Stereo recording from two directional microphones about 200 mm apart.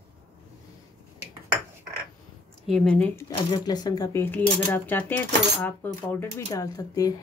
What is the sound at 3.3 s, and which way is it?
Speech, 20° left (ahead or behind).